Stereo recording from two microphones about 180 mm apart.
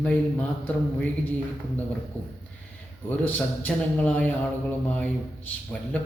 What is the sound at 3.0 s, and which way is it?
A man's voice, 10° left (ahead or behind).